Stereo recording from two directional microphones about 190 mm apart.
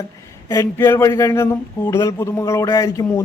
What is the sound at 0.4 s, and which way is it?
A man's voice, 15° left (ahead or behind).